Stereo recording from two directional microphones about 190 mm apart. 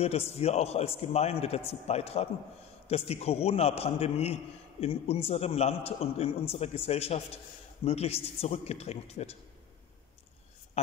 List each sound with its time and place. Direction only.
0.0 s a man's voice: 30° left (ahead or behind)